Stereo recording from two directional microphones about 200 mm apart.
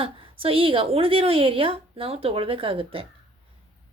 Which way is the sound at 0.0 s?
25° right (ahead or behind).